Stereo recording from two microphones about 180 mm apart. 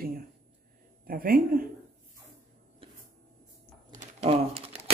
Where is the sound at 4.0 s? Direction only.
35° right (ahead or behind).